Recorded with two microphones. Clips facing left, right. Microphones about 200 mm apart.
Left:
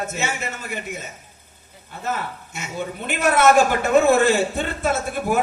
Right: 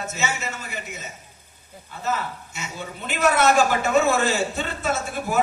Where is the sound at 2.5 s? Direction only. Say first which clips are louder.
Left 5 dB; 50° left (ahead or behind).